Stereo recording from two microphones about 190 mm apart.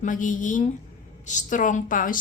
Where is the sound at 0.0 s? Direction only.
45° left (ahead or behind).